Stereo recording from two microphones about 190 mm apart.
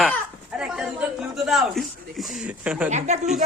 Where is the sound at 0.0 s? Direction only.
Centre (ahead or behind).